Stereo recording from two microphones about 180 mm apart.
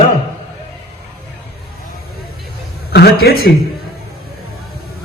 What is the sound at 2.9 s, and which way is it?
Speech, 60° left (ahead or behind).